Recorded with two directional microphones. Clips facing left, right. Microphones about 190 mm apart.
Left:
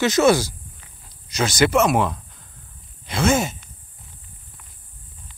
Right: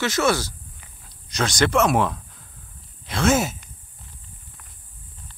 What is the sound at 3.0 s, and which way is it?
Sigh, centre (ahead or behind).